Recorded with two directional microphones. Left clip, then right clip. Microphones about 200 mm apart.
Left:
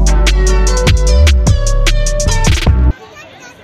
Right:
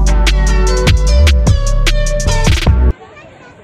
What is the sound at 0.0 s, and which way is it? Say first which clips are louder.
Music: left 1 dB; centre (ahead or behind).